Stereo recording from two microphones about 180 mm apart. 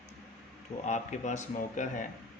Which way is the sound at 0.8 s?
40° left (ahead or behind).